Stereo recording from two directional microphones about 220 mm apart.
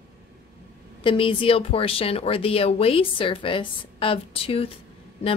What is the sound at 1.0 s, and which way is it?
Speech, 25° left (ahead or behind).